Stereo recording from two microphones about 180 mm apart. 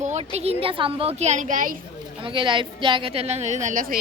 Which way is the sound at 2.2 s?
25° right (ahead or behind).